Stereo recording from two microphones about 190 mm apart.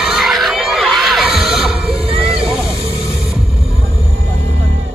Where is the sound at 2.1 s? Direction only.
30° right (ahead or behind).